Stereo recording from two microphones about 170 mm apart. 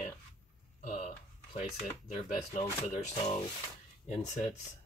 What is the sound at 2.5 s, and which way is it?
Speech, 40° left (ahead or behind).